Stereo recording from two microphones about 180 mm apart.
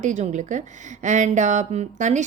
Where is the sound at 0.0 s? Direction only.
40° right (ahead or behind).